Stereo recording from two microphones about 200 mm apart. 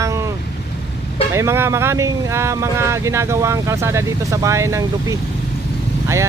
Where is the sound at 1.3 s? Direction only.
15° right (ahead or behind).